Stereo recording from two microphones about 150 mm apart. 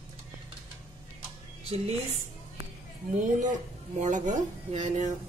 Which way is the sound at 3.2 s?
55° right (ahead or behind).